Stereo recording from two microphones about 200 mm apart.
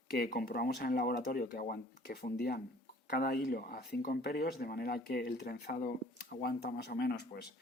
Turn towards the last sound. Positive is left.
turn(degrees=55)  # may be behind; listen again after turning